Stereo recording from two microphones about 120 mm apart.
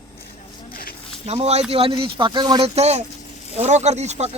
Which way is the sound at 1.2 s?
65° right (ahead or behind).